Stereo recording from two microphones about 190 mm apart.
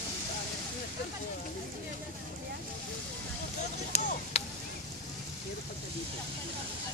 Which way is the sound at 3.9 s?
35° left (ahead or behind).